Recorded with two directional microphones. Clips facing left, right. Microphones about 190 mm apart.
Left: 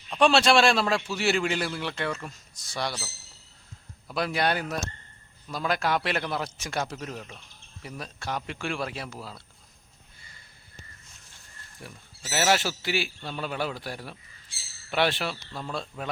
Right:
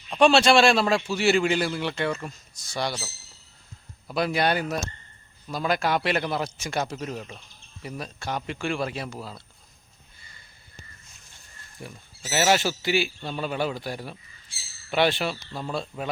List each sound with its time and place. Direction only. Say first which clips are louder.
0.1 s a man's voice: right 3 dB; centre (ahead or behind)
4.1 s a man's voice: right 3 dB; centre (ahead or behind)
11.8 s a man's voice: right 4 dB; centre (ahead or behind)